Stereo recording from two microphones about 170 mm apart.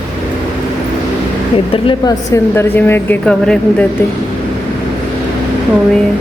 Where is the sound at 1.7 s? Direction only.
20° left (ahead or behind).